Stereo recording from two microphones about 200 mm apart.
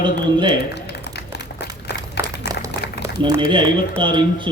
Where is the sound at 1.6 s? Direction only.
55° left (ahead or behind).